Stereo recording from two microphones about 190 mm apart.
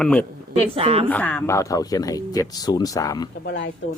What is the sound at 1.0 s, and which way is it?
Speech, 10° left (ahead or behind).